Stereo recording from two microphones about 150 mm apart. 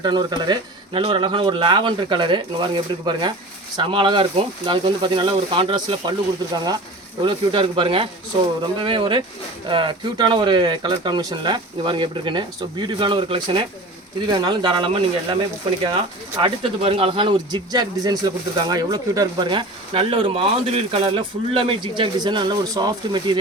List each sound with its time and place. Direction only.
0.0 s speech: 30° right (ahead or behind)
7.2 s speech: 35° right (ahead or behind)